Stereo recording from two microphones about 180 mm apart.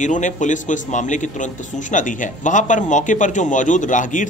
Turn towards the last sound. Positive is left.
turn(degrees=45)  # may be behind; listen again after turning